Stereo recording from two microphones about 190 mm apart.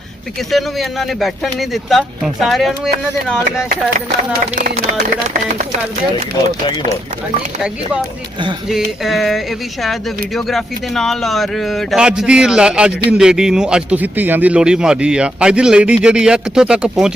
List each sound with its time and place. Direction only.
0.5 s speech: centre (ahead or behind)
4.5 s speech: 45° right (ahead or behind)
8.7 s speech: centre (ahead or behind)